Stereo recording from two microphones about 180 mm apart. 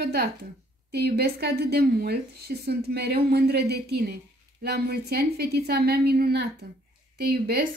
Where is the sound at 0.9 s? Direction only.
65° right (ahead or behind).